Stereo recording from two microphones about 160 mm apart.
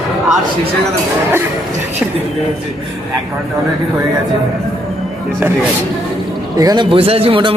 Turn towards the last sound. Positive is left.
turn(degrees=-35)  # may be behind; listen again after turning